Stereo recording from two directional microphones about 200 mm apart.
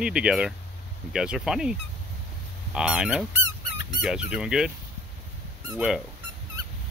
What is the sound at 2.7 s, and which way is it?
Goose, 5° right (ahead or behind).